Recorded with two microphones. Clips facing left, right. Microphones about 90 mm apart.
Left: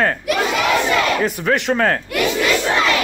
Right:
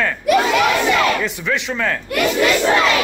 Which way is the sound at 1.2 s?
45° left (ahead or behind).